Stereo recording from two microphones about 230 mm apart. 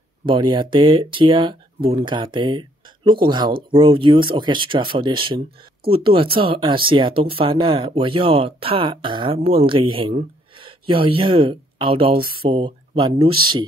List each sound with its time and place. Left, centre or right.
0.2 s speech: right